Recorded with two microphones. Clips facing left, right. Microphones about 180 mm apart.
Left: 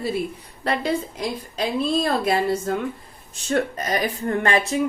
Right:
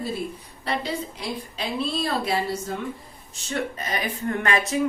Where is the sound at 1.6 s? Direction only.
50° left (ahead or behind).